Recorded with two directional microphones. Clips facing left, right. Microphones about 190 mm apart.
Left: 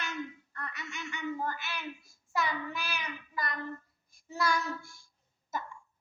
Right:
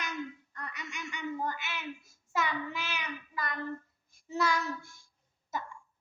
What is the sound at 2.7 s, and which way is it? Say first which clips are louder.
Speech: even; 20° right (ahead or behind).